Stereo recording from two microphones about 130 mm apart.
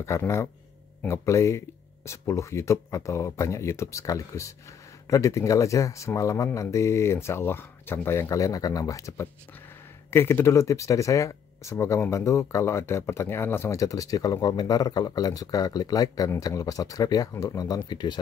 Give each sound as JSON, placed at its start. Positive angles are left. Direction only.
{"t": 0.0, "sound": "speech", "side_deg": 20}